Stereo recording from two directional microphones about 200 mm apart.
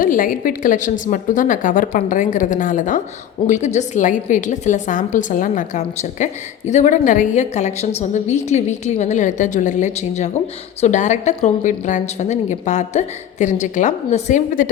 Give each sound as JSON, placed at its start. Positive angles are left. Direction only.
{"t": 0.0, "sound": "a woman's voice", "side_deg": 45}